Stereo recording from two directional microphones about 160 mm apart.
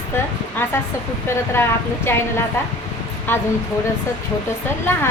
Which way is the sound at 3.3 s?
15° left (ahead or behind).